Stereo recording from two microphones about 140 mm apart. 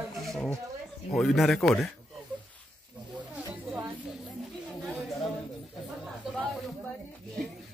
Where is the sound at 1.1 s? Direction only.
Centre (ahead or behind).